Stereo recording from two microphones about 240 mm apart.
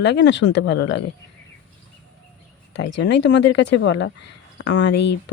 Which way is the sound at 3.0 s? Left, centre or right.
Left.